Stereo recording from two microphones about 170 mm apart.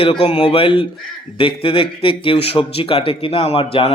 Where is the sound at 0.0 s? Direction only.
30° left (ahead or behind).